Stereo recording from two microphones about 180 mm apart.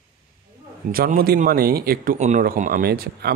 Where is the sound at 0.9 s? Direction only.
55° right (ahead or behind).